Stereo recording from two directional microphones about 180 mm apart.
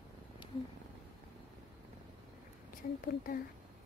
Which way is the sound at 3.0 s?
55° left (ahead or behind).